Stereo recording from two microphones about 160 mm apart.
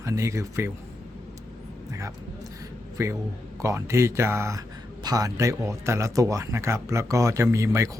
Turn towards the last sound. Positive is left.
turn(degrees=-20)  # may be behind; listen again after turning